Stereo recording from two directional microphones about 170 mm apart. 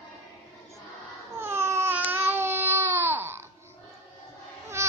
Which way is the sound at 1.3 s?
15° right (ahead or behind).